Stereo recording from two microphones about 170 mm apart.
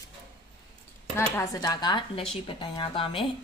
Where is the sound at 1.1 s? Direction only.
15° left (ahead or behind).